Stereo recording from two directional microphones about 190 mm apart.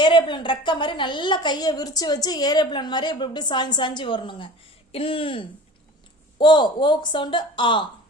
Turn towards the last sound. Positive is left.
turn(degrees=25)  # may be behind; listen again after turning